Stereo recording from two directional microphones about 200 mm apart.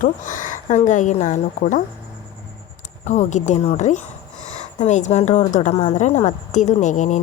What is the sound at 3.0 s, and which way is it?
A woman's voice, 35° left (ahead or behind).